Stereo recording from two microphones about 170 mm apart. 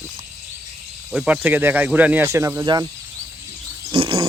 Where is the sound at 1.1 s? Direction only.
5° right (ahead or behind).